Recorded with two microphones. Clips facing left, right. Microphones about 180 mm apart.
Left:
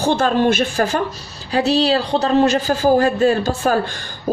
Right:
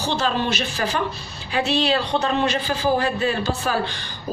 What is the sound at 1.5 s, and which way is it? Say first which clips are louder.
Speech: left 5 dB; 35° left (ahead or behind).